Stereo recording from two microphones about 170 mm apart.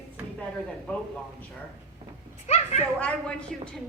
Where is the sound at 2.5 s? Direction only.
40° left (ahead or behind).